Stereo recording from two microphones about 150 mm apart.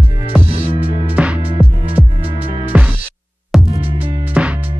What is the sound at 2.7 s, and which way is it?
Music, 10° right (ahead or behind).